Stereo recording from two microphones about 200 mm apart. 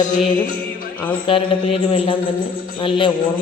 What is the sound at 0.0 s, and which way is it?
Music, 40° left (ahead or behind).